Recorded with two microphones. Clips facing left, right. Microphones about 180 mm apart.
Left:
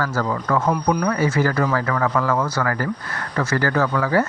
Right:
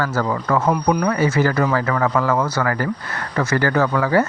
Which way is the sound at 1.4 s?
20° right (ahead or behind).